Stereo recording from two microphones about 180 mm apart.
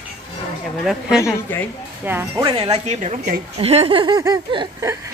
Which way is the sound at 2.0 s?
10° right (ahead or behind).